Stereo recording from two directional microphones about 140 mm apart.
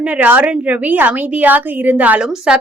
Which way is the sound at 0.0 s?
10° right (ahead or behind).